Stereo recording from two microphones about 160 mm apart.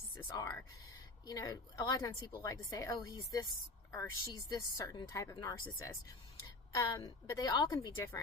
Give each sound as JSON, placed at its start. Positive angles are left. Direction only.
{"t": 0.3, "sound": "speech", "side_deg": 25}